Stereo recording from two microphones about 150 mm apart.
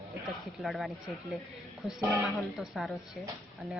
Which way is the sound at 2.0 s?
Centre (ahead or behind).